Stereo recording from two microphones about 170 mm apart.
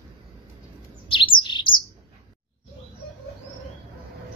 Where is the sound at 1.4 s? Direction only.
25° left (ahead or behind).